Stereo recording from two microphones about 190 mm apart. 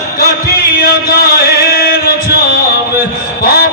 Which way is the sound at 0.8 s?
55° left (ahead or behind).